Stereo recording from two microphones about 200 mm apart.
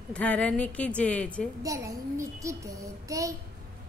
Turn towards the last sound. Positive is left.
turn(degrees=-15)  # may be behind; listen again after turning